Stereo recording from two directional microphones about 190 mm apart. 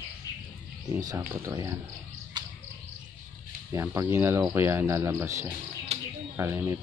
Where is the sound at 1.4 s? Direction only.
15° right (ahead or behind).